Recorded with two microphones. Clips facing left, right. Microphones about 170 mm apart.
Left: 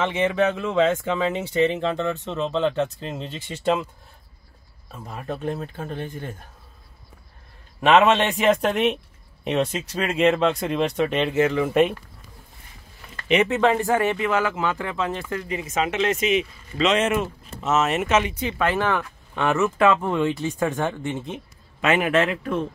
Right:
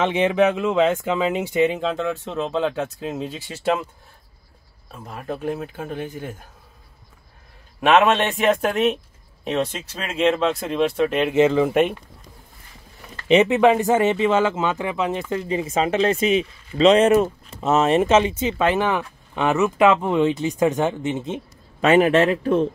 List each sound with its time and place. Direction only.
0.0 s speech: 20° right (ahead or behind)
4.9 s speech: centre (ahead or behind)
7.8 s a man's voice: centre (ahead or behind)
11.3 s speech: 25° right (ahead or behind)
11.7 s a man's voice: 5° right (ahead or behind)
13.1 s speech: 25° right (ahead or behind)
21.8 s a man's voice: 35° right (ahead or behind)